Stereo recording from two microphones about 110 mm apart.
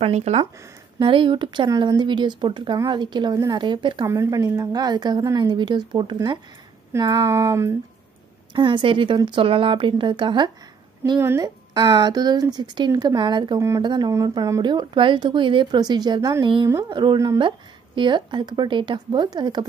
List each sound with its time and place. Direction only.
0.0 s speech: 70° right (ahead or behind)
0.9 s speech: 50° right (ahead or behind)
4.0 s a woman's voice: 30° right (ahead or behind)
7.0 s a sound: 30° right (ahead or behind)
8.5 s speech: 45° right (ahead or behind)
11.1 s a sound: 25° right (ahead or behind)
11.4 s a woman's voice: 35° right (ahead or behind)
13.6 s a sound: 25° right (ahead or behind)
13.8 s a woman's voice: 40° right (ahead or behind)